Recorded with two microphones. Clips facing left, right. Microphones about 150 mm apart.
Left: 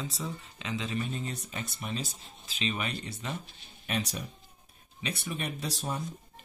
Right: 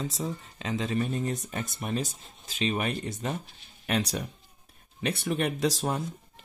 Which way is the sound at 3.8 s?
65° right (ahead or behind).